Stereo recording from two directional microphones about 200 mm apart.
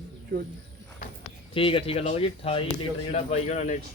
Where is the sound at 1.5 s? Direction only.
25° left (ahead or behind).